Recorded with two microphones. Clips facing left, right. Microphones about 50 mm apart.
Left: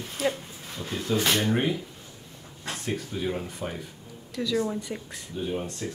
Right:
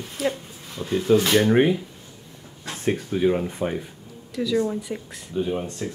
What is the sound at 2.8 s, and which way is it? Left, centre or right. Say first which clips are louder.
Speech: right 9 dB; right.